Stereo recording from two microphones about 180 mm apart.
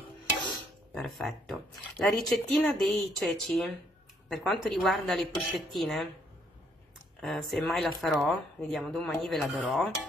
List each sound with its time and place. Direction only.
0.9 s speech: centre (ahead or behind)
7.2 s speech: centre (ahead or behind)